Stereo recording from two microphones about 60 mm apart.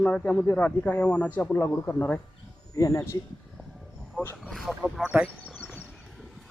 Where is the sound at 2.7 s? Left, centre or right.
Left.